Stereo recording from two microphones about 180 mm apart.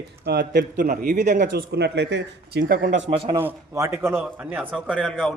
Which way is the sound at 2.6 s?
50° right (ahead or behind).